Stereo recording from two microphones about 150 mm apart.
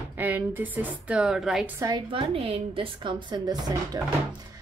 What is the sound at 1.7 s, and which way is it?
Speech, 25° right (ahead or behind).